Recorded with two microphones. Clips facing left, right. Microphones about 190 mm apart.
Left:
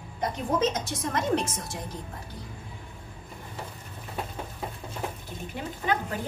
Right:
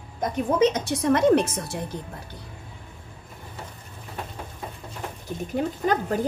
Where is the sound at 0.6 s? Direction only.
65° right (ahead or behind).